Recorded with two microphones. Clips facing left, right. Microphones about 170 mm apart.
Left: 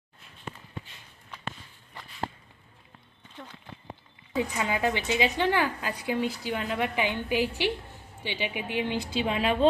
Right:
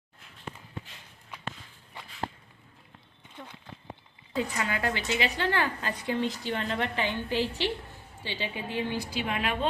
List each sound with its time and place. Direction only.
4.4 s a woman's voice: 15° left (ahead or behind)